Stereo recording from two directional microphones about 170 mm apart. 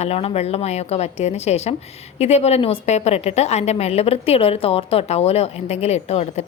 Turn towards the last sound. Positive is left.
turn(degrees=40)  # may be behind; listen again after turning